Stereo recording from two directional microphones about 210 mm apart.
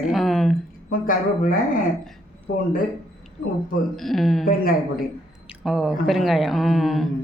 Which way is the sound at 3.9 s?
Centre (ahead or behind).